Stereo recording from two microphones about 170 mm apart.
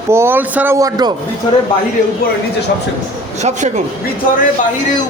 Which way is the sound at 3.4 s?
45° right (ahead or behind).